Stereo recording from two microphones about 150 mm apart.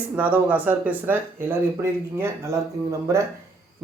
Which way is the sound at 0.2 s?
10° right (ahead or behind).